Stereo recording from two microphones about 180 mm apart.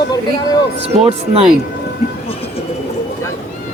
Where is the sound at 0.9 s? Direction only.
35° right (ahead or behind).